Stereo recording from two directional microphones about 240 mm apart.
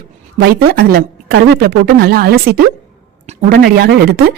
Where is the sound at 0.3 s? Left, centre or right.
Right.